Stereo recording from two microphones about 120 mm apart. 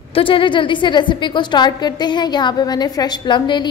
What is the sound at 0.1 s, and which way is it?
A woman's voice, 50° left (ahead or behind).